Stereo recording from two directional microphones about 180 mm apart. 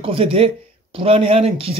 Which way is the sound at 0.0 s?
30° right (ahead or behind).